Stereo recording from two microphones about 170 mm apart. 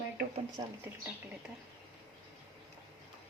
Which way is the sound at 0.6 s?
25° right (ahead or behind).